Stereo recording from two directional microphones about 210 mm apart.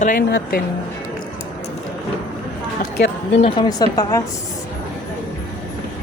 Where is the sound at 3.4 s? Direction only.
20° left (ahead or behind).